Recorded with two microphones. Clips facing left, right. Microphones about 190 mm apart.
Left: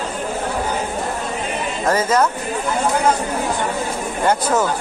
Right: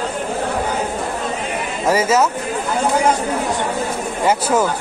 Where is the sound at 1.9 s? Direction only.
10° right (ahead or behind).